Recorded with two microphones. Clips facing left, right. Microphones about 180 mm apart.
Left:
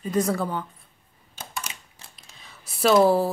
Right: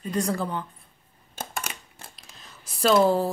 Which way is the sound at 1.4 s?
50° right (ahead or behind).